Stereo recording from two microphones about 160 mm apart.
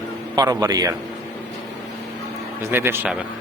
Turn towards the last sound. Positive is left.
turn(degrees=-10)  # may be behind; listen again after turning